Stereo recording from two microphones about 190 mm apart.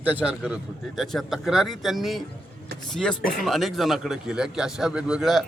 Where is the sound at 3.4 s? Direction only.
Centre (ahead or behind).